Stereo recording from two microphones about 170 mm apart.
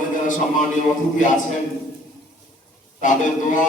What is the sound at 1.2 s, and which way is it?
Speech, 45° left (ahead or behind).